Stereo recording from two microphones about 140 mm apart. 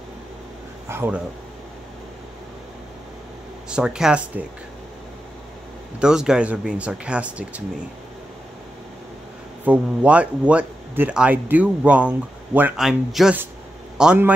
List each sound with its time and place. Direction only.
0.8 s speech: 15° right (ahead or behind)
3.6 s speech: 5° right (ahead or behind)
5.9 s speech: 5° right (ahead or behind)
9.7 s a man's voice: 10° right (ahead or behind)